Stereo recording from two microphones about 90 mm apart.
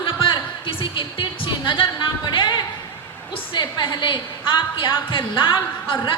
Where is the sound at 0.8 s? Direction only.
65° left (ahead or behind).